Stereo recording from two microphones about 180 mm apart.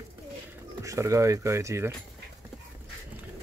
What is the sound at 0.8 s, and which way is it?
Speech, 15° right (ahead or behind).